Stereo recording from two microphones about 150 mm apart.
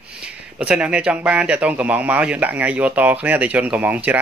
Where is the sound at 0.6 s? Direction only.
5° right (ahead or behind).